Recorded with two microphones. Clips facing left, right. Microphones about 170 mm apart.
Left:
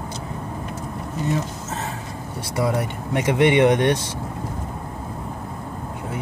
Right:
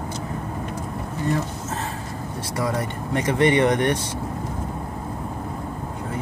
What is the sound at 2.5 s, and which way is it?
Speech, 10° left (ahead or behind).